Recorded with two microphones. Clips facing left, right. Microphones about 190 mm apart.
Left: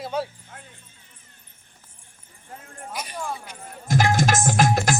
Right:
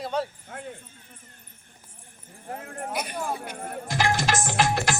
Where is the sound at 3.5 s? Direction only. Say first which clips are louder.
Right 7 dB; 60° right (ahead or behind).